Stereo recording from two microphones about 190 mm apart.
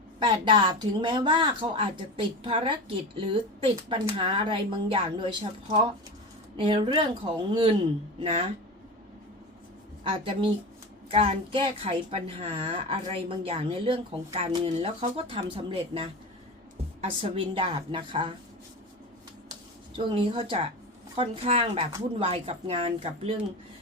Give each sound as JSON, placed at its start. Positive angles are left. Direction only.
{"t": 0.2, "sound": "a woman's voice", "side_deg": -25}
{"t": 6.6, "sound": "a woman's voice", "side_deg": -25}
{"t": 10.0, "sound": "a woman's voice", "side_deg": -25}
{"t": 20.0, "sound": "a woman's voice", "side_deg": -25}